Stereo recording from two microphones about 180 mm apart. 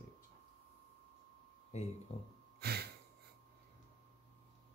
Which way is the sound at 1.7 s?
40° left (ahead or behind).